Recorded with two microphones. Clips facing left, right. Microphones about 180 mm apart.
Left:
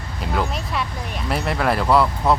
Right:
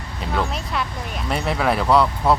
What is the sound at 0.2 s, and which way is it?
Speech, centre (ahead or behind).